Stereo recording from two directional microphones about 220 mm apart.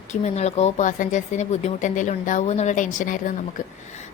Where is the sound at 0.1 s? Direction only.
30° left (ahead or behind).